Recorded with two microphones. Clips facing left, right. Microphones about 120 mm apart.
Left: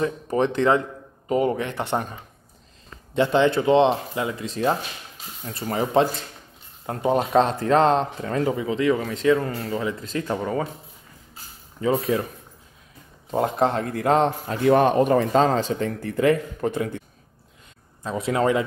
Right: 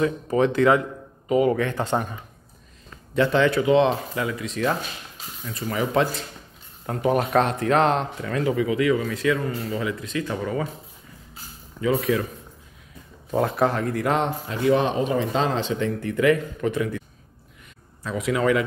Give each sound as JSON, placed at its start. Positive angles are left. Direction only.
{"t": 0.0, "sound": "speech", "side_deg": 30}
{"t": 1.6, "sound": "speech", "side_deg": 20}
{"t": 3.2, "sound": "speech", "side_deg": 25}
{"t": 11.8, "sound": "speech", "side_deg": 30}
{"t": 13.3, "sound": "speech", "side_deg": 25}
{"t": 14.7, "sound": "speech", "side_deg": 55}
{"t": 18.0, "sound": "speech", "side_deg": 30}